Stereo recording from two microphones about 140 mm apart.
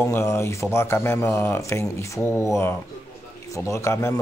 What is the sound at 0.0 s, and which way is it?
Speech, 20° left (ahead or behind).